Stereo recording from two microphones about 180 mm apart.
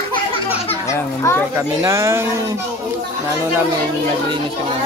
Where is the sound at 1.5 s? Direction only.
15° right (ahead or behind).